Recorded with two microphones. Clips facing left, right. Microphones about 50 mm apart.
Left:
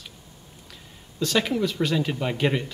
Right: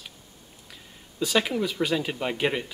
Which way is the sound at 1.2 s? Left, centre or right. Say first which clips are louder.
Left 1 dB; centre.